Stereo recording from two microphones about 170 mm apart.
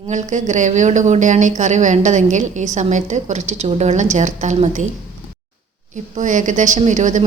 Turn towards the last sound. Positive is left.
turn(degrees=-45)  # may be behind; listen again after turning